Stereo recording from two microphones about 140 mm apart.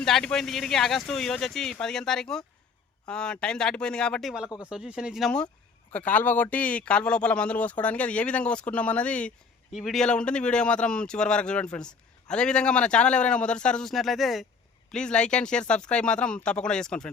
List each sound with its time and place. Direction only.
0.0 s speech: 5° left (ahead or behind)
4.4 s speech: 20° left (ahead or behind)
4.7 s speech: 5° right (ahead or behind)